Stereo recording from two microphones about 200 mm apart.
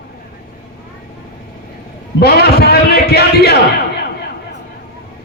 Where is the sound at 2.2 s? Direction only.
55° left (ahead or behind).